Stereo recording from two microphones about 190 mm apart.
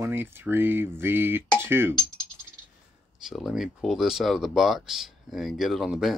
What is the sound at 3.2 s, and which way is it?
Speech, centre (ahead or behind).